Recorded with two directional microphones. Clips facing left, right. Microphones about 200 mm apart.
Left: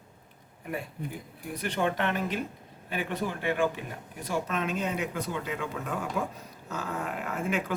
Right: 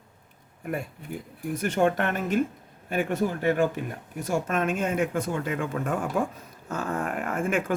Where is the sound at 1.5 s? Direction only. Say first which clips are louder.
Right 5 dB; 45° right (ahead or behind).